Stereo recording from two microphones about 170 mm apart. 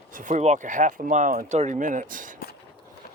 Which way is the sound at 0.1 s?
50° right (ahead or behind).